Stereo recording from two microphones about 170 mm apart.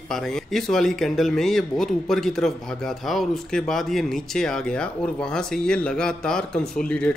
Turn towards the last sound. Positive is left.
turn(degrees=5)  # may be behind; listen again after turning